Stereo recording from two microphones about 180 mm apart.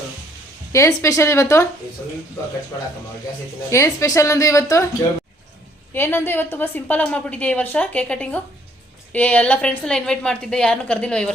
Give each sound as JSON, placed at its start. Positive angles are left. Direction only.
{"t": 0.7, "sound": "a woman's voice", "side_deg": 15}
{"t": 3.7, "sound": "a woman's voice", "side_deg": 15}
{"t": 5.9, "sound": "a woman's voice", "side_deg": 10}